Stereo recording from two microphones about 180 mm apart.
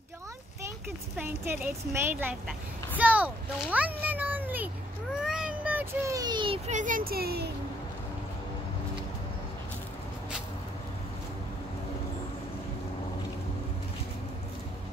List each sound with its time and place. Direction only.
1.1 s speech: 10° right (ahead or behind)
3.7 s meow: 10° right (ahead or behind)
5.2 s child singing: 5° right (ahead or behind); by 6.6 s 25° right (ahead or behind)
6.7 s a child's voice: 45° right (ahead or behind); by 7.5 s 60° right (ahead or behind)